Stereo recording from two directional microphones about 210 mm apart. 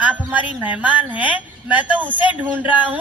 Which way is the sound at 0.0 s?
5° right (ahead or behind).